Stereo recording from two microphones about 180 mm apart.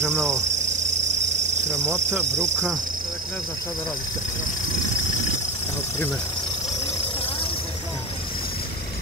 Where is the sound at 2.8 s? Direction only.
50° right (ahead or behind).